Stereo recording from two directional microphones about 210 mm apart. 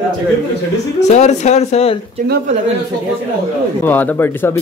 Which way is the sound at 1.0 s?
35° left (ahead or behind).